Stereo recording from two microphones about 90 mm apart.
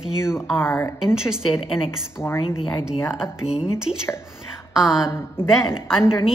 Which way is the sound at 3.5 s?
5° right (ahead or behind).